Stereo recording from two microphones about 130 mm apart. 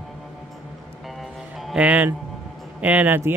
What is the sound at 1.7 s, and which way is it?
A man's voice, 10° right (ahead or behind).